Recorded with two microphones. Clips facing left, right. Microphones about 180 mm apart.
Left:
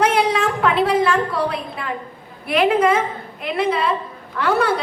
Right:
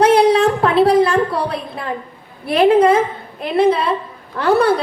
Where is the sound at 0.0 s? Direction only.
35° right (ahead or behind).